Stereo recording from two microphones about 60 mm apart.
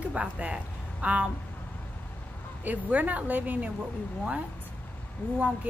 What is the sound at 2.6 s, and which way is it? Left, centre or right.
Speech, right.